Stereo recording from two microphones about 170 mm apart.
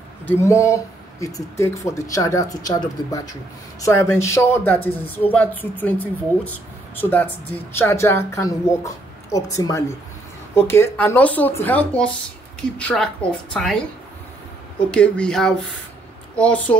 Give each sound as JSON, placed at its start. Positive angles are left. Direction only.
{"t": 0.3, "sound": "a woman's voice", "side_deg": 15}
{"t": 3.8, "sound": "a woman's voice", "side_deg": 15}
{"t": 14.8, "sound": "a woman's voice", "side_deg": 5}